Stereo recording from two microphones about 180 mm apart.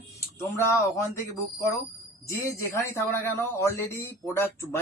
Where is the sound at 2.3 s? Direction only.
15° left (ahead or behind).